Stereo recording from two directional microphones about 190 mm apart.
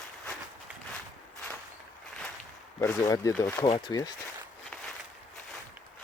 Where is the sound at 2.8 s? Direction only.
15° left (ahead or behind).